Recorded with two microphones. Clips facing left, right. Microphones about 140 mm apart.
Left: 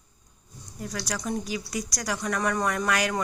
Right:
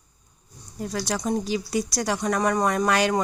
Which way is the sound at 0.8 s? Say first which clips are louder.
Right 5 dB; 25° right (ahead or behind).